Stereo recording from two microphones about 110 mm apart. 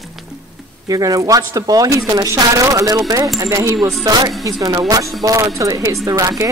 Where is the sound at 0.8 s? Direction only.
35° right (ahead or behind).